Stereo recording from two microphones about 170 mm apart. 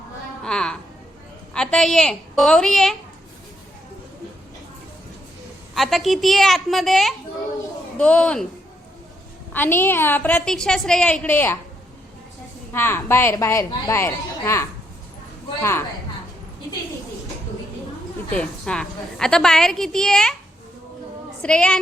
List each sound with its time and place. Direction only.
0.4 s a sound: 5° left (ahead or behind)
1.5 s a woman's voice: 5° left (ahead or behind)
5.7 s a woman's voice: centre (ahead or behind)
9.5 s a woman's voice: 10° left (ahead or behind)
12.7 s a woman's voice: 15° left (ahead or behind)
18.3 s a woman's voice: 5° left (ahead or behind)
21.4 s a woman's voice: 5° left (ahead or behind)